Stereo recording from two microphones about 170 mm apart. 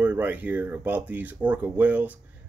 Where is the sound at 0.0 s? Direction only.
10° right (ahead or behind).